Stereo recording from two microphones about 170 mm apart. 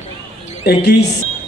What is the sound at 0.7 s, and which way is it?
Speech, 75° left (ahead or behind).